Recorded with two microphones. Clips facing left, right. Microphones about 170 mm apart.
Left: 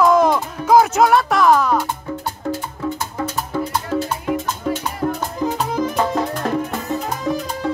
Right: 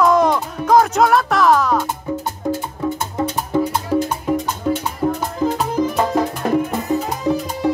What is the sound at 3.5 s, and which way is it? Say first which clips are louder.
Music: right 4 dB; 15° right (ahead or behind).